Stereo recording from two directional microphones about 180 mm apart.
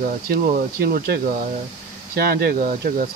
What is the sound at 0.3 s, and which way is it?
Speech, 55° right (ahead or behind).